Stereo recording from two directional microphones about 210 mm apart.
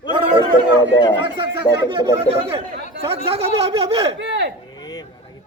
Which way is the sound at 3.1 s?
30° right (ahead or behind).